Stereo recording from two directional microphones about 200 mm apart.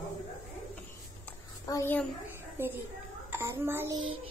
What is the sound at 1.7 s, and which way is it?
Speech, 10° left (ahead or behind).